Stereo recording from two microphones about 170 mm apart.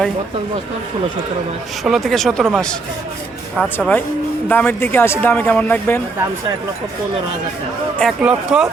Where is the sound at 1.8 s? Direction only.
Centre (ahead or behind).